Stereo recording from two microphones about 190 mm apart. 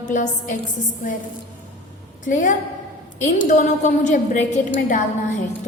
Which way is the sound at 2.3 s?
40° left (ahead or behind).